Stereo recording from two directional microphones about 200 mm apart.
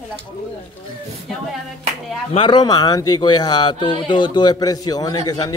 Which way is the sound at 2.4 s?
20° left (ahead or behind).